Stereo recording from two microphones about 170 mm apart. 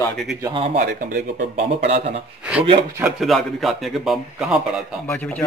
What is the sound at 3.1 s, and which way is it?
Speech, centre (ahead or behind).